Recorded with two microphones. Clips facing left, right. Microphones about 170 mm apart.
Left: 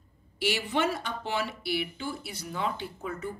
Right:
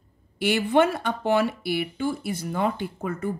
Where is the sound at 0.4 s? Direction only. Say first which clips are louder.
Right 8 dB; 55° right (ahead or behind).